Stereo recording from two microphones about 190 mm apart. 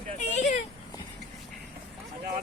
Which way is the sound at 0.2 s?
40° left (ahead or behind).